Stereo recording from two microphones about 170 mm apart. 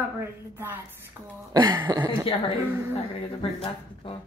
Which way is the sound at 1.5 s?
30° right (ahead or behind).